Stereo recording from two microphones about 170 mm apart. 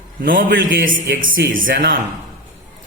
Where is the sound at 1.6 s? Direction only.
55° right (ahead or behind).